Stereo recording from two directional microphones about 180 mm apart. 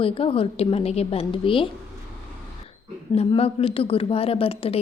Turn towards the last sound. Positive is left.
turn(degrees=30)  # may be behind; listen again after turning